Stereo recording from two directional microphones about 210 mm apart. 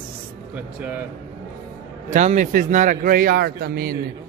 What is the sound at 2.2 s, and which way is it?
A man's voice, 35° right (ahead or behind).